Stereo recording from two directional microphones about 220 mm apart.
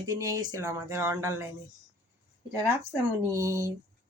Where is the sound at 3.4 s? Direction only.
15° right (ahead or behind).